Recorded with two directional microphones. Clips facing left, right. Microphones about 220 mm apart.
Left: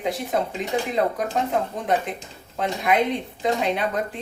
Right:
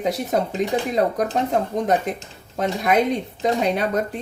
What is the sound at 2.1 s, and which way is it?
A woman's voice, 45° right (ahead or behind).